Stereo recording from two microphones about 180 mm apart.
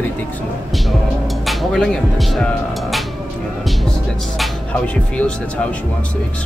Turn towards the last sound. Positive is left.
turn(degrees=5)  # may be behind; listen again after turning